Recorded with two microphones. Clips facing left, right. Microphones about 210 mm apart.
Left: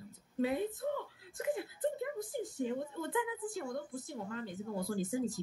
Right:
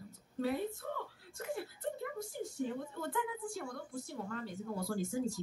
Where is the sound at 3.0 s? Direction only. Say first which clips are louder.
Left 2 dB; 20° left (ahead or behind).